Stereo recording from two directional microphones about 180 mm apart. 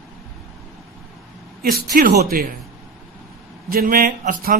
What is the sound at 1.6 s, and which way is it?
Speech, 55° right (ahead or behind).